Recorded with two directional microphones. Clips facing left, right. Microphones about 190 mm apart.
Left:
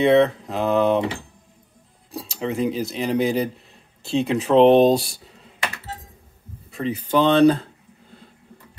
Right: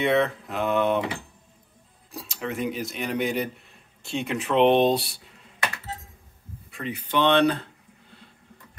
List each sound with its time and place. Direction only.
0.0 s speech: 30° left (ahead or behind)
2.1 s speech: 30° left (ahead or behind)
6.7 s speech: 40° left (ahead or behind)